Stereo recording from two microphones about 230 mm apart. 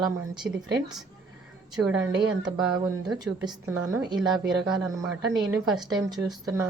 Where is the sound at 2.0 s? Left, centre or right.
Centre.